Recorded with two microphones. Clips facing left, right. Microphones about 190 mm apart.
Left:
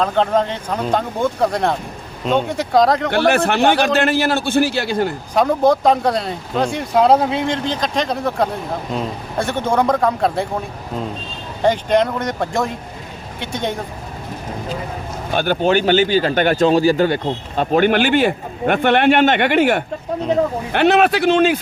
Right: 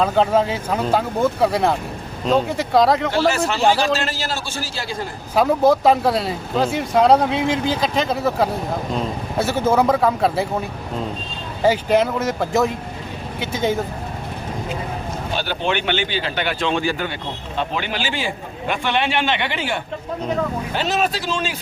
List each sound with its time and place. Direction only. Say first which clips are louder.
0.0 s speech: even; 5° right (ahead or behind)
3.1 s a man's voice: left 3 dB; 60° left (ahead or behind)
5.3 s speech: even; 5° right (ahead or behind)
11.6 s speech: left 1 dB; 5° right (ahead or behind)
15.4 s a man's voice: left 8 dB; 45° left (ahead or behind)